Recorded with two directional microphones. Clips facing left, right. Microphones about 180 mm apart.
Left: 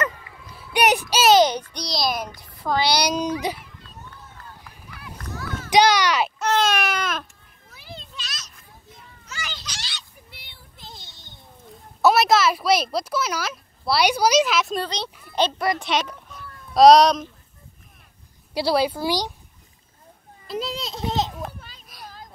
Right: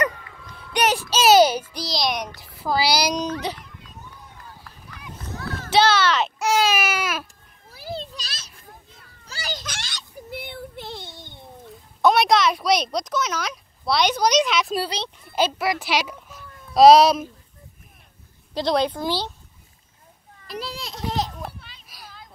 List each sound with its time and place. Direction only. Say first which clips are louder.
0.5 s a sound: left 2 dB; 10° left (ahead or behind)
1.2 s a child's voice: right 2 dB; 10° right (ahead or behind)
3.3 s a woman's voice: left 2 dB; 10° left (ahead or behind)
4.1 s run: even; 10° right (ahead or behind)
4.6 s a sound: even; 10° left (ahead or behind)
5.7 s a woman's voice: left 1 dB; 15° left (ahead or behind)
6.4 s baby cry: right 1 dB; 5° right (ahead or behind)
7.7 s children playing: right 8 dB; 35° right (ahead or behind)
9.7 s a sound: right 3 dB; 55° right (ahead or behind)
12.0 s a child's voice: even; 5° left (ahead or behind)
18.5 s a woman's voice: left 1 dB; 10° left (ahead or behind)
20.4 s children playing: left 4 dB; 20° left (ahead or behind)
21.5 s a sound: left 3 dB; 40° left (ahead or behind)